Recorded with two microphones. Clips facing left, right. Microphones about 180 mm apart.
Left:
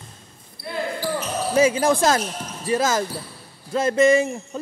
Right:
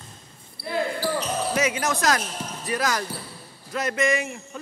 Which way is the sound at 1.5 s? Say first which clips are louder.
Left 10 dB; 30° left (ahead or behind).